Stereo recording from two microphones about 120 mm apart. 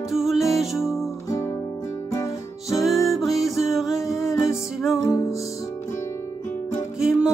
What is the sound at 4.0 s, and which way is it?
Music, 25° left (ahead or behind).